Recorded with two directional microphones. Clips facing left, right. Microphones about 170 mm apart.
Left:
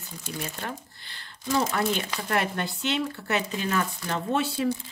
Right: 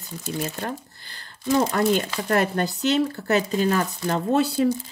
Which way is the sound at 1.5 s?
40° right (ahead or behind).